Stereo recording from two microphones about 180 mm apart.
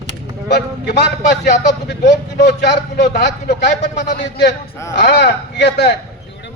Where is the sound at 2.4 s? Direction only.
70° left (ahead or behind).